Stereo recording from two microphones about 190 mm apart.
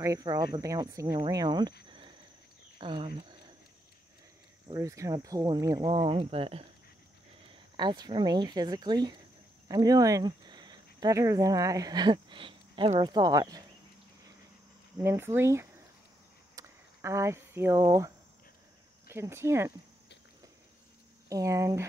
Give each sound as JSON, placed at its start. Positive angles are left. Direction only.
{"t": 0.0, "sound": "speech", "side_deg": -15}
{"t": 4.6, "sound": "speech", "side_deg": -15}
{"t": 7.7, "sound": "speech", "side_deg": -25}
{"t": 15.0, "sound": "speech", "side_deg": -15}
{"t": 16.5, "sound": "cricket", "side_deg": -15}
{"t": 19.0, "sound": "speech", "side_deg": -15}
{"t": 21.3, "sound": "speech", "side_deg": -15}